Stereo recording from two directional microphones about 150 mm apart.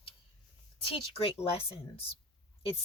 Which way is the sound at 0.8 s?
40° left (ahead or behind).